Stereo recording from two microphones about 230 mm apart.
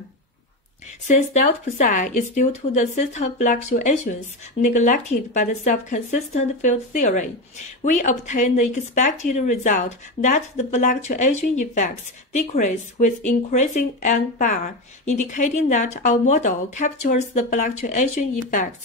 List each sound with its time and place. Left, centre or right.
1.0 s speech: left